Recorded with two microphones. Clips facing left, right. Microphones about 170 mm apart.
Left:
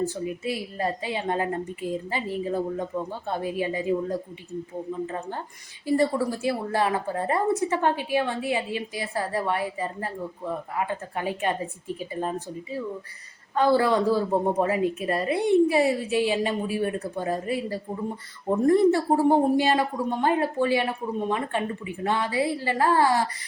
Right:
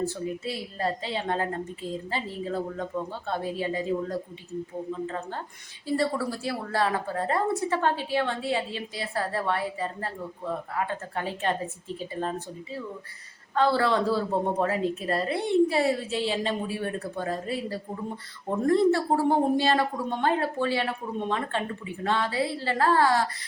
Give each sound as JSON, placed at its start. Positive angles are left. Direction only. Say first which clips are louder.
{"t": 0.0, "sound": "a woman's voice", "louder": "left 2 dB", "side_deg": 15}
{"t": 13.6, "sound": "a woman's voice", "louder": "left 3 dB", "side_deg": 15}